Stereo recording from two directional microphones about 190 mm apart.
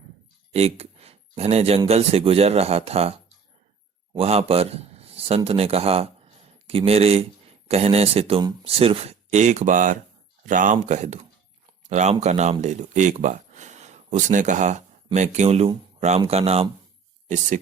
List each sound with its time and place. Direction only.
0.5 s a man's voice: 30° right (ahead or behind)